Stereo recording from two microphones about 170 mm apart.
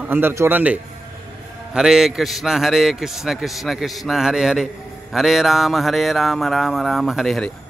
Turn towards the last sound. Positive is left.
turn(degrees=0)  # may be behind; listen again after turning